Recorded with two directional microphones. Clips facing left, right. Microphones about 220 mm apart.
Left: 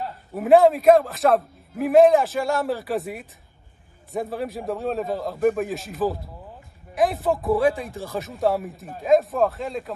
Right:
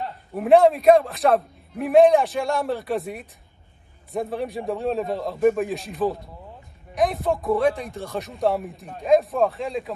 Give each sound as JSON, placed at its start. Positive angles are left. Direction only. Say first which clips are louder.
{"t": 0.0, "sound": "a man's voice", "louder": "even", "side_deg": 0}